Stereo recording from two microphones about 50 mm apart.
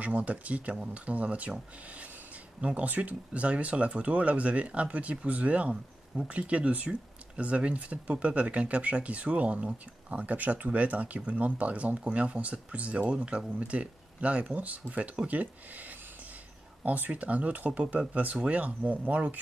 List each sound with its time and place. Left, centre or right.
0.0 s speech: right
2.6 s speech: right
16.8 s speech: right